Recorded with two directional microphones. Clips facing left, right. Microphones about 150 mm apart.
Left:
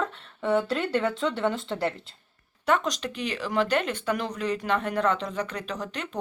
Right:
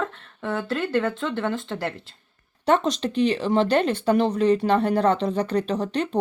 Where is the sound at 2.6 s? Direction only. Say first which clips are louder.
Right 5 dB; 30° right (ahead or behind).